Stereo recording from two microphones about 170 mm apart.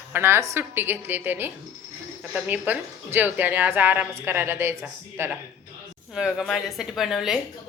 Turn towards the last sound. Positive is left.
turn(degrees=0)  # may be behind; listen again after turning